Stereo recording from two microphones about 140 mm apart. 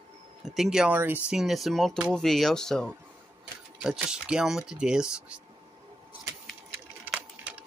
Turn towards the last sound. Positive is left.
turn(degrees=-10)  # may be behind; listen again after turning